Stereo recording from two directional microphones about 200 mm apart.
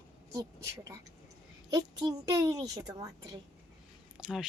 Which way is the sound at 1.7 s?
20° right (ahead or behind).